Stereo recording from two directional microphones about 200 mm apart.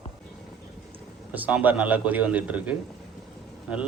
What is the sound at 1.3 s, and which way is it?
A man's voice, 10° right (ahead or behind).